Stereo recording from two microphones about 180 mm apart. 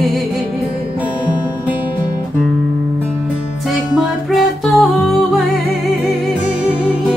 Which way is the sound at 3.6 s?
5° right (ahead or behind).